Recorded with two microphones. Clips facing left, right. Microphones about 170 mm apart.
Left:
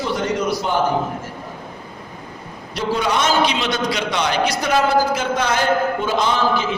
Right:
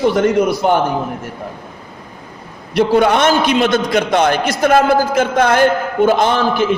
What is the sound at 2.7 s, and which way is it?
A man's voice, 60° right (ahead or behind).